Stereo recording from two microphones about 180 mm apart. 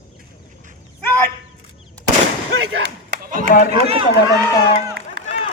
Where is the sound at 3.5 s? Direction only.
55° left (ahead or behind).